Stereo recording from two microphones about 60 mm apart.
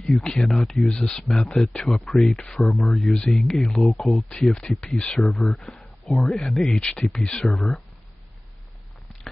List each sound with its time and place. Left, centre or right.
0.2 s speech: centre
0.5 s speech: centre
5.6 s a sound: centre
6.3 s speech: centre